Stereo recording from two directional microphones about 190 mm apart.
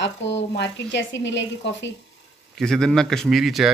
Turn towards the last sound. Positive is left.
turn(degrees=0)  # may be behind; listen again after turning